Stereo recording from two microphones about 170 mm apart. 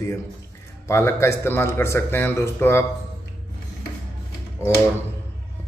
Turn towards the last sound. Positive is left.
turn(degrees=15)  # may be behind; listen again after turning